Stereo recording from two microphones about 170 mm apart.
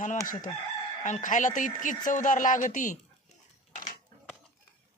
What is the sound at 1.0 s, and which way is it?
Speech, 45° left (ahead or behind).